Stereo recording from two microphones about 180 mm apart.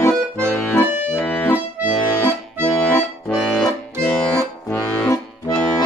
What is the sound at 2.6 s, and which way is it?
Accordion, 5° left (ahead or behind).